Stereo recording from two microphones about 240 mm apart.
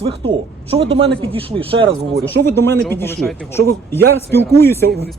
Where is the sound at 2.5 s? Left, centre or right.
Centre.